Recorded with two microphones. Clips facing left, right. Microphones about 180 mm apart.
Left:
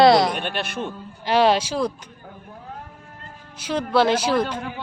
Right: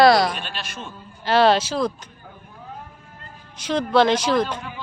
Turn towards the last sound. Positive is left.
turn(degrees=10)  # may be behind; listen again after turning